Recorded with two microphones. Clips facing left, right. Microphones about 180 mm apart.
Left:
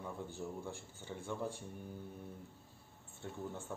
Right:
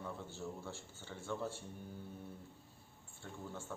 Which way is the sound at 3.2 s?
15° left (ahead or behind).